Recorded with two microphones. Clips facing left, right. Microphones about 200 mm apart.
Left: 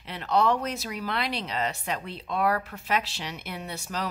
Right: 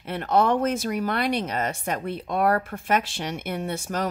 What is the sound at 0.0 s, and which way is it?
Speech, 50° right (ahead or behind).